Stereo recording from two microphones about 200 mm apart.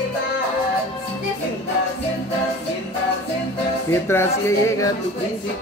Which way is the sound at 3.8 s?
10° left (ahead or behind).